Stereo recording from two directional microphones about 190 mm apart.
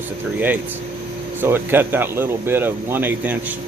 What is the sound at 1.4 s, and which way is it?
Speech, 10° right (ahead or behind).